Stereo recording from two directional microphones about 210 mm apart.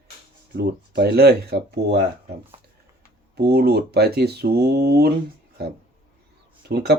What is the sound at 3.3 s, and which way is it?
Speech, 50° right (ahead or behind).